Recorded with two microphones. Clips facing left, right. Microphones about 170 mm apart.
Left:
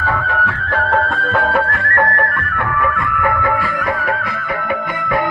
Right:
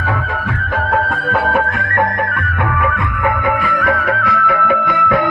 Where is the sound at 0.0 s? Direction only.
15° right (ahead or behind).